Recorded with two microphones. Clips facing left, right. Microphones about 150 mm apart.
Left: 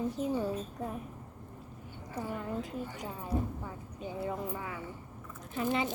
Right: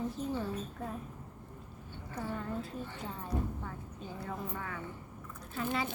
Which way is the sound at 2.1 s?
15° left (ahead or behind).